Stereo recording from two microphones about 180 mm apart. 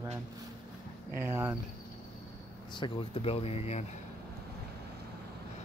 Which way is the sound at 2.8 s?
30° left (ahead or behind).